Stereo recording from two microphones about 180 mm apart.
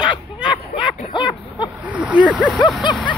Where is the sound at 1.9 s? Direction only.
10° right (ahead or behind).